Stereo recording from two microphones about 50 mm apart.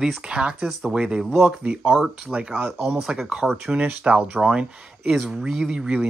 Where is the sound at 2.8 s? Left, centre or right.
Centre.